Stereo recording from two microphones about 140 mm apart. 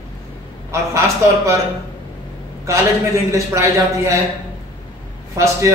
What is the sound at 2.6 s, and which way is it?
A man's voice, 20° right (ahead or behind).